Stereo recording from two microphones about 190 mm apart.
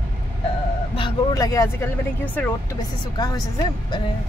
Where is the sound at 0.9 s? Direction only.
20° left (ahead or behind).